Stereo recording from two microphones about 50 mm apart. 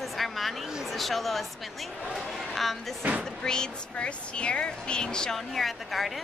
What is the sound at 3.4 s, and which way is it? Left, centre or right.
Speech, centre.